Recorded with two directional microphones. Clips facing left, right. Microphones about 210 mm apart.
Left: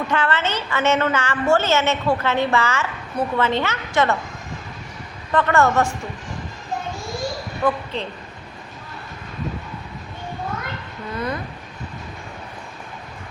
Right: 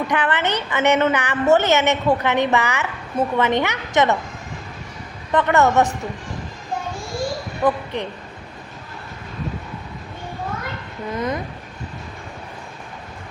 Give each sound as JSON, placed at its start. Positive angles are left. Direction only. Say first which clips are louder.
{"t": 0.1, "sound": "a woman's voice", "louder": "right 1 dB", "side_deg": -15}
{"t": 5.3, "sound": "speech", "louder": "right 1 dB", "side_deg": -20}
{"t": 7.6, "sound": "a woman's voice", "louder": "right 2 dB", "side_deg": -15}
{"t": 11.1, "sound": "speech", "louder": "right 2 dB", "side_deg": -20}